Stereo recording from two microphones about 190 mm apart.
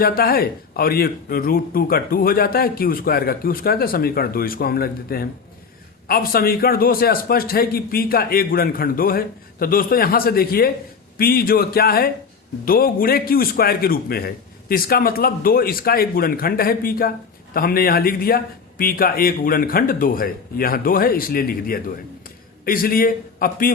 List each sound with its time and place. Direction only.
0.0 s a man's voice: 50° left (ahead or behind)